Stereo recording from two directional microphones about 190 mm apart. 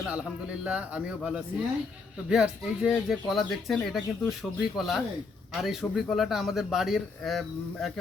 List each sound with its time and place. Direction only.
0.0 s speech: 5° right (ahead or behind)